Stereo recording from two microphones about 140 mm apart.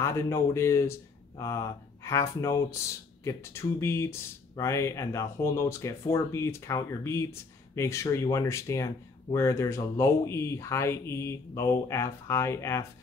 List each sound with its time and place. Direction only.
0.0 s speech: 20° left (ahead or behind)